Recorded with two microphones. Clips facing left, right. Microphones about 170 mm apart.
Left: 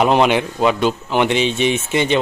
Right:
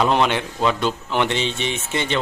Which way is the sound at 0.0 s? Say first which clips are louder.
Left 4 dB; 15° left (ahead or behind).